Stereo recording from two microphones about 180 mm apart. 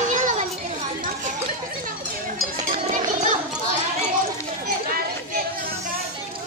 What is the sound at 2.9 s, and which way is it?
Children playing, 45° right (ahead or behind).